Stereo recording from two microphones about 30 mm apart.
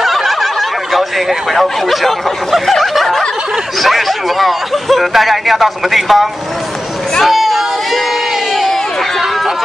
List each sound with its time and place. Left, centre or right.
0.0 s fowl: centre
3.8 s speech: centre
7.2 s a sound: centre